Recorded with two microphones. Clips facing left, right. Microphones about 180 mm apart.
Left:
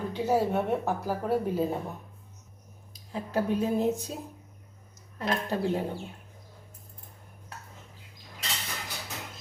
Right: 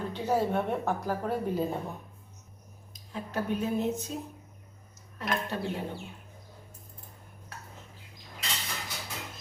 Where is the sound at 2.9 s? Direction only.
35° left (ahead or behind).